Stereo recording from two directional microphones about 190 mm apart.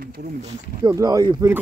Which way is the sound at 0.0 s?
55° right (ahead or behind).